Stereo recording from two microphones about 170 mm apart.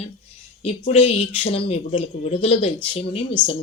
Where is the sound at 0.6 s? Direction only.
35° left (ahead or behind).